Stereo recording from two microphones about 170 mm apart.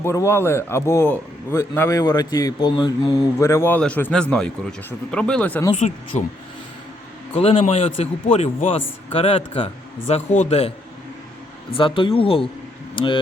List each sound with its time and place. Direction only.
0.0 s a man's voice: 15° left (ahead or behind)
3.3 s a man's voice: 15° left (ahead or behind)
5.7 s speech: 45° left (ahead or behind)
7.3 s a man's voice: 35° left (ahead or behind)
11.8 s a man's voice: 30° left (ahead or behind)